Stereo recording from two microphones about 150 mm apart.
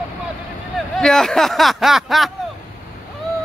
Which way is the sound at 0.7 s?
Centre (ahead or behind).